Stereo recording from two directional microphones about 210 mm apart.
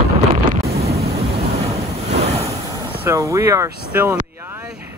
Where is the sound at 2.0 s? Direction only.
30° right (ahead or behind).